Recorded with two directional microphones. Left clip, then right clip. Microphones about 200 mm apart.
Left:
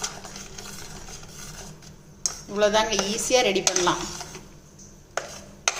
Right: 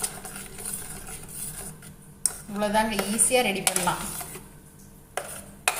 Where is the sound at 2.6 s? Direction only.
45° left (ahead or behind).